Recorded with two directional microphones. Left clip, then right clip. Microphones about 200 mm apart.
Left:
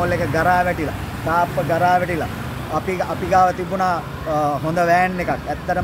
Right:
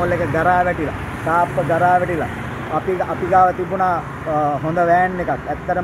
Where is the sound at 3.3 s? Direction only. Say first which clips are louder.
Right 2 dB; 20° left (ahead or behind).